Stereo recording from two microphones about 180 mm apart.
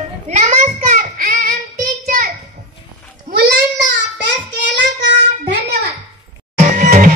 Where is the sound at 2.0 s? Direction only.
55° right (ahead or behind).